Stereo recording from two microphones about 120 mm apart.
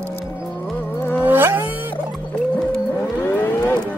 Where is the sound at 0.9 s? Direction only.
20° left (ahead or behind).